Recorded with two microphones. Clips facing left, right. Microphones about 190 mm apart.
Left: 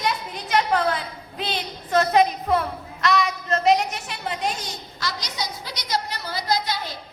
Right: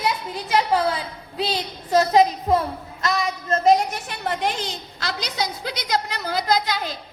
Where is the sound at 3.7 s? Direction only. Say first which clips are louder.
Right 3 dB; 50° right (ahead or behind).